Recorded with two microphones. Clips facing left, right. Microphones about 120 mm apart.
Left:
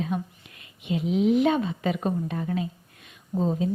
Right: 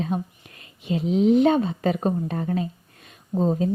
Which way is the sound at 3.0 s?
40° right (ahead or behind).